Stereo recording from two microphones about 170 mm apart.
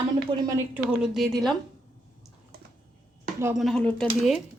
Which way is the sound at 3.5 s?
Centre (ahead or behind).